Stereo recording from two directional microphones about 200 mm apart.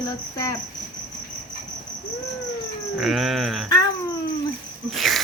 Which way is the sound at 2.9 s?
Centre (ahead or behind).